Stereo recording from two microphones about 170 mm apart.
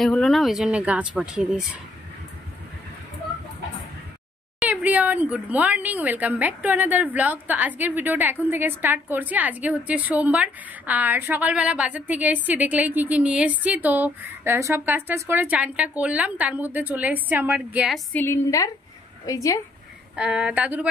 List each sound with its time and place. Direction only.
0.0 s speech: centre (ahead or behind)
4.6 s speech: 10° right (ahead or behind)
18.1 s a woman's voice: 15° left (ahead or behind)
20.2 s speech: 5° right (ahead or behind)